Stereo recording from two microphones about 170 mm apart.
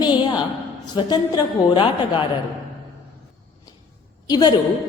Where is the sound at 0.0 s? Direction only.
25° left (ahead or behind).